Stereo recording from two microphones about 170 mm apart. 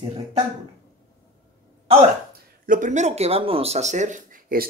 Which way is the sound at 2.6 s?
50° right (ahead or behind).